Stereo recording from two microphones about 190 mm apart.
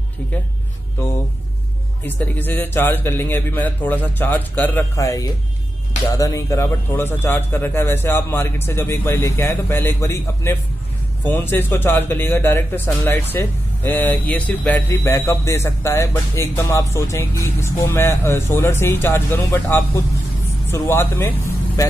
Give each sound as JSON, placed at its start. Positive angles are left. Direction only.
{"t": 2.0, "sound": "speech", "side_deg": 10}